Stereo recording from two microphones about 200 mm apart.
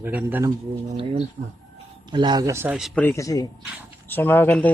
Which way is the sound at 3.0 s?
15° left (ahead or behind).